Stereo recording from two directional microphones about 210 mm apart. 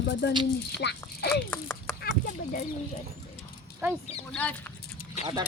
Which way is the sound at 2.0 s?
45° left (ahead or behind).